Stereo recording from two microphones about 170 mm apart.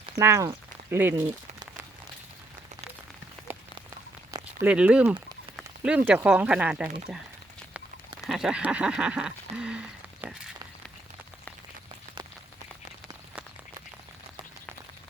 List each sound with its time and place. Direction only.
0.2 s speech: 15° right (ahead or behind)
4.6 s speech: 5° right (ahead or behind)
8.3 s a sound: 5° right (ahead or behind)